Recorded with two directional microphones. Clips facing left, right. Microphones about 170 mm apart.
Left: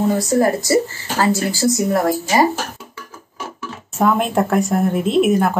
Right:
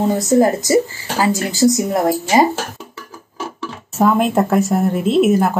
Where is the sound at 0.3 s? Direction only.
20° right (ahead or behind).